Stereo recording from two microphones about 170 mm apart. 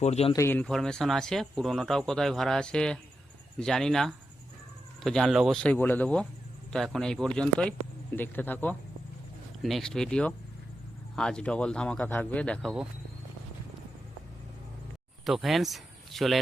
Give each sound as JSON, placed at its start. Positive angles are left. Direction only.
{"t": 0.0, "sound": "speech", "side_deg": 40}
{"t": 0.3, "sound": "speech", "side_deg": 10}
{"t": 15.3, "sound": "speech", "side_deg": 0}